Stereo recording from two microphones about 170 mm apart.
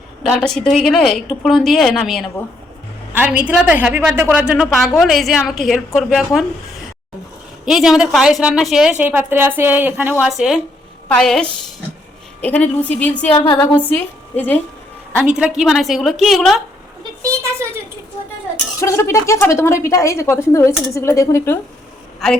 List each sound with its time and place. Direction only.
0.2 s a woman's voice: centre (ahead or behind)
3.1 s a woman's voice: 10° right (ahead or behind)
7.6 s a woman's voice: 5° right (ahead or behind)
13.3 s a sound: 25° left (ahead or behind)
13.9 s a woman's voice: 10° left (ahead or behind)
15.2 s a woman's voice: 5° right (ahead or behind)
17.2 s a woman's voice: 15° right (ahead or behind)
18.8 s a woman's voice: 15° left (ahead or behind)